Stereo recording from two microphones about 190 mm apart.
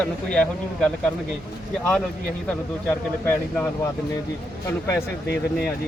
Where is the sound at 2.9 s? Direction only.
10° left (ahead or behind).